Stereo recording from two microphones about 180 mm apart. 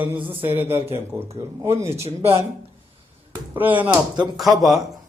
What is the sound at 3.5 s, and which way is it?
Speech, 10° right (ahead or behind).